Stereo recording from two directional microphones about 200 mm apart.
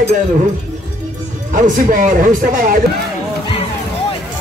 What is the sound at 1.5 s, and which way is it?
A man's voice, 40° right (ahead or behind).